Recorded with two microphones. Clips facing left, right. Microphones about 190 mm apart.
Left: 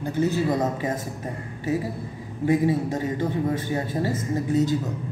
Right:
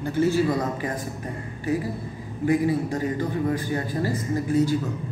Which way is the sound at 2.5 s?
20° left (ahead or behind).